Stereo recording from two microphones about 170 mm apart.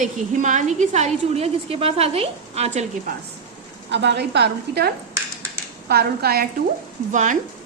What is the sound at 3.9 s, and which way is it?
A woman's voice, 90° right.